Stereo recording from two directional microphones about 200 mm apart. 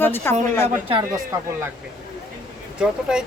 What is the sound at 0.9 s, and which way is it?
Speech, 20° right (ahead or behind).